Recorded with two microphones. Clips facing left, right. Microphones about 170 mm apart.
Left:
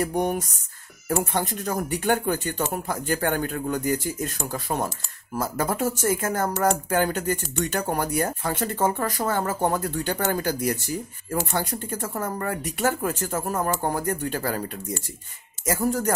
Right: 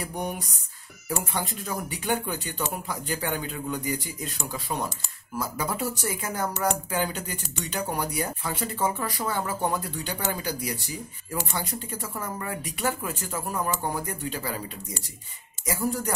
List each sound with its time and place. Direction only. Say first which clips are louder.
1.0 s speech: left 5 dB; 45° left (ahead or behind)